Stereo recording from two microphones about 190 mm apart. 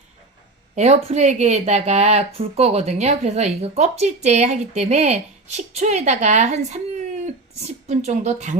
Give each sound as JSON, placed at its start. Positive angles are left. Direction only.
{"t": 0.8, "sound": "speech", "side_deg": -35}